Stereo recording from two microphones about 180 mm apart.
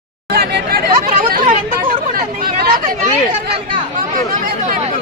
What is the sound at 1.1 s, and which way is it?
Chatter, 45° right (ahead or behind).